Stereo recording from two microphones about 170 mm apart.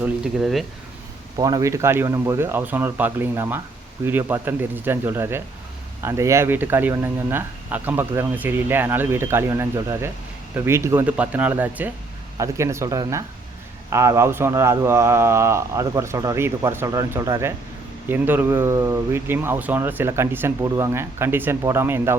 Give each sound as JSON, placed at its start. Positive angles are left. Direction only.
{"t": 0.0, "sound": "speech", "side_deg": 0}
{"t": 1.4, "sound": "speech", "side_deg": -20}